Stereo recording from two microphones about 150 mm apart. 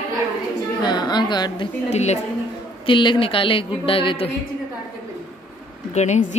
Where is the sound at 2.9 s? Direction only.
35° left (ahead or behind).